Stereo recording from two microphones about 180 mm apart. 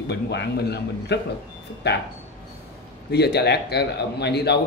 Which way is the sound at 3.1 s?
65° left (ahead or behind).